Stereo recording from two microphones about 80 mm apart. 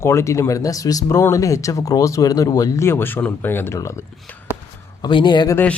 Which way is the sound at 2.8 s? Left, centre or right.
Left.